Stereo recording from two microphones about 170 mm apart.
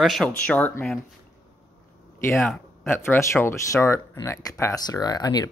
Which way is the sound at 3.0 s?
15° left (ahead or behind).